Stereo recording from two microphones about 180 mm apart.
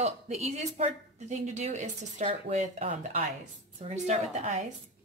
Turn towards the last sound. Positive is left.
turn(degrees=-35)  # may be behind; listen again after turning